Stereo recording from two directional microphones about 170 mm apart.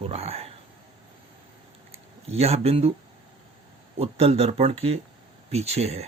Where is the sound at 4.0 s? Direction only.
35° right (ahead or behind).